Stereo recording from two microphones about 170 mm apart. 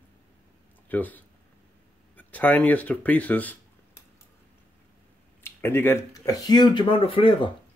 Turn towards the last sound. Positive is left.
turn(degrees=30)  # may be behind; listen again after turning